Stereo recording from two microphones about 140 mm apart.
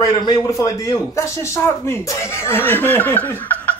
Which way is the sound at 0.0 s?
30° left (ahead or behind).